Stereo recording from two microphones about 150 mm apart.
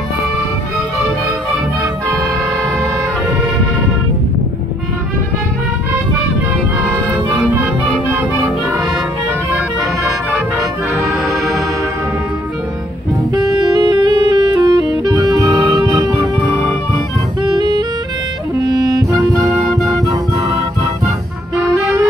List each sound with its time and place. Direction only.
7.1 s music: 10° right (ahead or behind)
10.6 s music: 20° right (ahead or behind)
13.3 s saxophone: 30° right (ahead or behind)
17.4 s music: 25° right (ahead or behind)